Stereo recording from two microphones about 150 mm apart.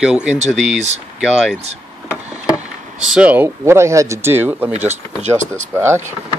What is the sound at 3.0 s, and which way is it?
Speech, 5° right (ahead or behind).